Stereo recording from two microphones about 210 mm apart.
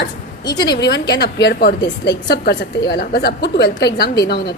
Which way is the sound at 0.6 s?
50° left (ahead or behind).